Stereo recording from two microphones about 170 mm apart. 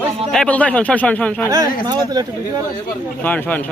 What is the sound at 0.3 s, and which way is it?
Speech, 5° left (ahead or behind).